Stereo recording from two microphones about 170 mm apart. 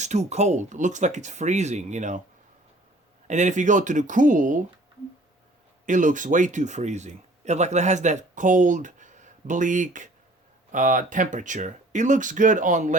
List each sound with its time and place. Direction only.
0.0 s speech: 40° right (ahead or behind)
3.2 s speech: 45° right (ahead or behind)
5.8 s speech: 50° right (ahead or behind)